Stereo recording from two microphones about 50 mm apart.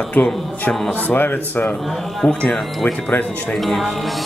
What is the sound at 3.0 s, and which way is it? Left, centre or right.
Speech, left.